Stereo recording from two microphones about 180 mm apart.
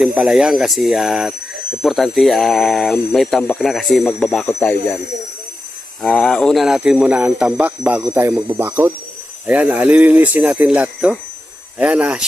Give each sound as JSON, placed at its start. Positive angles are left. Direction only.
{"t": 0.0, "sound": "speech", "side_deg": -5}
{"t": 6.0, "sound": "speech", "side_deg": 5}